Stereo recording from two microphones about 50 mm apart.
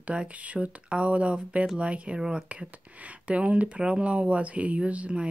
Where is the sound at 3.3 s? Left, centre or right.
Right.